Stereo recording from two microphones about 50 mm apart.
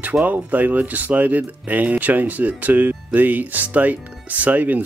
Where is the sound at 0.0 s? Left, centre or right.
Right.